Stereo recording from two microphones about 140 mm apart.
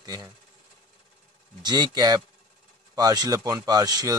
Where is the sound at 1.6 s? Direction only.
30° right (ahead or behind).